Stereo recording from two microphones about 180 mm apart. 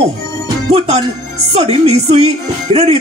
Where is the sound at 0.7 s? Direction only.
35° right (ahead or behind).